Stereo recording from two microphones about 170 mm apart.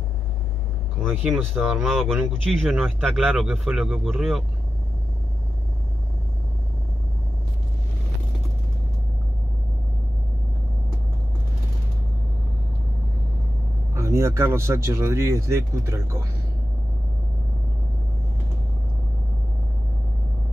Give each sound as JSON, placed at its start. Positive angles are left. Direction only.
{"t": 1.2, "sound": "speech", "side_deg": -5}
{"t": 13.9, "sound": "speech", "side_deg": -15}